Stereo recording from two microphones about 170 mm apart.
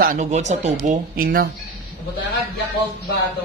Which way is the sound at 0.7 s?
60° right (ahead or behind).